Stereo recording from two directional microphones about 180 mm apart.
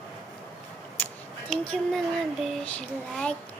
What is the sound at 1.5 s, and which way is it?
Child singing, centre (ahead or behind).